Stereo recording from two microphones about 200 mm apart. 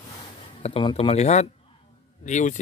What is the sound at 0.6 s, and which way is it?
Speech, 30° left (ahead or behind).